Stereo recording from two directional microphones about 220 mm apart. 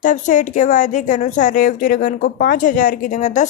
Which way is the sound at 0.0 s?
35° left (ahead or behind).